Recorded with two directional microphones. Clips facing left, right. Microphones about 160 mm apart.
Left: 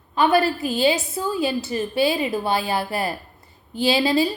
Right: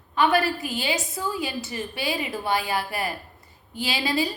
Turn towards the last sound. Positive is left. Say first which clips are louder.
# left 7 dB
turn(degrees=30)  # may be behind; listen again after turning